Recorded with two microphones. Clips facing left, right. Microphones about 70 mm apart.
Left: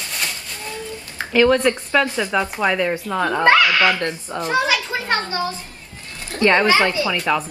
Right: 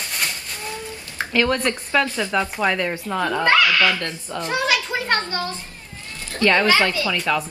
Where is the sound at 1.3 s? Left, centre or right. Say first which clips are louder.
Left 5 dB; centre.